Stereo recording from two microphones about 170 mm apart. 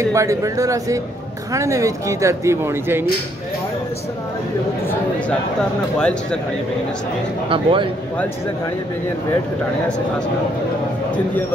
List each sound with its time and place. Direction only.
0.1 s speech: 20° right (ahead or behind)
5.9 s speech: 5° left (ahead or behind)
7.4 s speech: 30° right (ahead or behind)